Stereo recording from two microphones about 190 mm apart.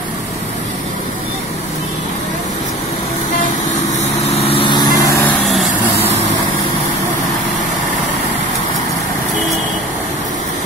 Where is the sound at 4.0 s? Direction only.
30° left (ahead or behind); by 5.3 s 15° left (ahead or behind).